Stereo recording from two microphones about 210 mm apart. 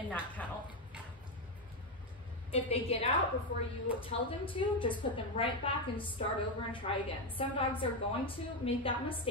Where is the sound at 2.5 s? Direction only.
30° left (ahead or behind).